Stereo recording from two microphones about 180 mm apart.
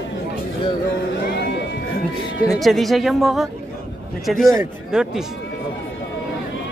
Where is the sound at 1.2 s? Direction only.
70° left (ahead or behind).